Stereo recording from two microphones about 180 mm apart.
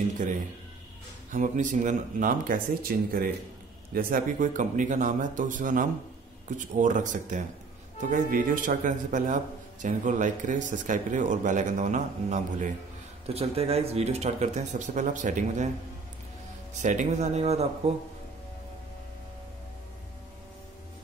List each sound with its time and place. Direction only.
1.3 s a man's voice: 45° right (ahead or behind)
16.7 s speech: 45° right (ahead or behind)